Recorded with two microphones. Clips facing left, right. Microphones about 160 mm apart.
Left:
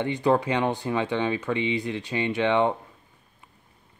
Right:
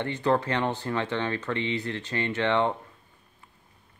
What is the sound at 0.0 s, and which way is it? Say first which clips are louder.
Speech: left 3 dB; 15° left (ahead or behind).